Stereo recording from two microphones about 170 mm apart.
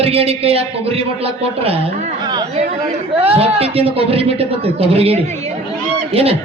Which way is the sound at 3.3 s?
35° right (ahead or behind).